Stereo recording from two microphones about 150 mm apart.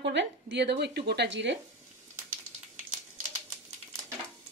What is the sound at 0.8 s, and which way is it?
Speech, 90° right.